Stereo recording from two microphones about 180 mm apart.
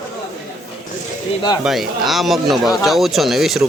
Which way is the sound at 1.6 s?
Centre (ahead or behind).